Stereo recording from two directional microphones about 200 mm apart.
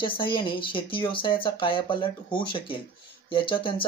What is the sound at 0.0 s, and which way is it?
Speech, 25° left (ahead or behind).